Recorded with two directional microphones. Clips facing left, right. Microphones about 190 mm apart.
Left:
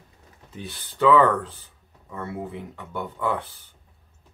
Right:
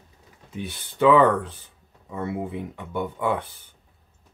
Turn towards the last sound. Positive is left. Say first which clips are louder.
# right 2 dB
turn(degrees=-20)  # may be behind; listen again after turning